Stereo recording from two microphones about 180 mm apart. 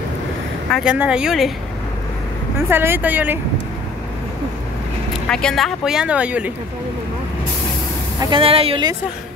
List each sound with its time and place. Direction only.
0.7 s speech: centre (ahead or behind)
2.7 s speech: 10° right (ahead or behind)
5.3 s speech: 5° left (ahead or behind)
8.2 s speech: 30° right (ahead or behind)